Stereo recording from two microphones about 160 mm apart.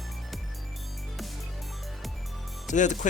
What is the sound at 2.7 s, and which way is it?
Speech, 50° left (ahead or behind).